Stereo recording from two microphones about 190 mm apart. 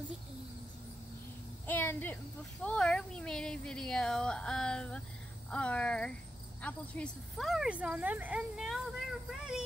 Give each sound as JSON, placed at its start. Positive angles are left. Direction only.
{"t": 1.7, "sound": "speech", "side_deg": 10}